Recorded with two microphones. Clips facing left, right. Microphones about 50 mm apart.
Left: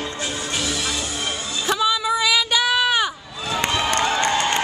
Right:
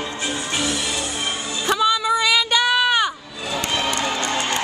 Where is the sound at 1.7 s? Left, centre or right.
Centre.